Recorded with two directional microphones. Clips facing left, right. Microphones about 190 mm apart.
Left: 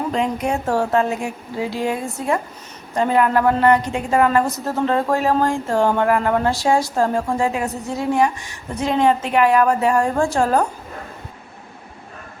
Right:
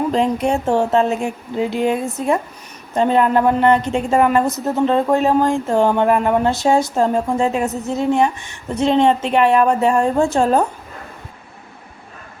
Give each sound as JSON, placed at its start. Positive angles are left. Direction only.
{"t": 0.1, "sound": "speech", "side_deg": -30}